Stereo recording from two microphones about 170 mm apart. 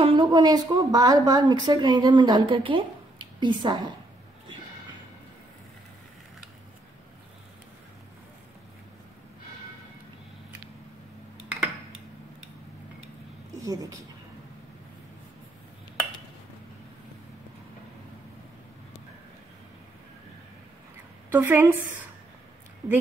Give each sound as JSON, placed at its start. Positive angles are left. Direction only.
{"t": 0.0, "sound": "a woman's voice", "side_deg": -30}
{"t": 13.6, "sound": "a woman's voice", "side_deg": -20}
{"t": 21.3, "sound": "a woman's voice", "side_deg": -10}
{"t": 22.8, "sound": "a woman's voice", "side_deg": -15}